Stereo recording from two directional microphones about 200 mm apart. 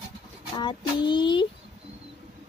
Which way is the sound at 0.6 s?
25° left (ahead or behind).